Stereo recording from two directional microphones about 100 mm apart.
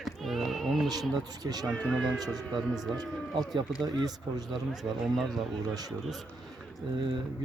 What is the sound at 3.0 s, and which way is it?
Speech, 40° right (ahead or behind).